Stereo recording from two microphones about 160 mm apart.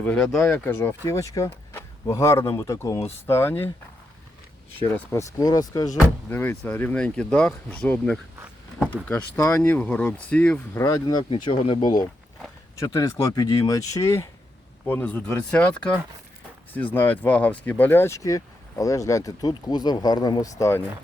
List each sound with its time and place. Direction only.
0.0 s speech: 5° left (ahead or behind)
4.9 s speech: 20° left (ahead or behind)
10.8 s speech: 20° left (ahead or behind)